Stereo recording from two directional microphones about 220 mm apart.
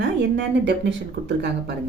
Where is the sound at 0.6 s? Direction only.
50° right (ahead or behind).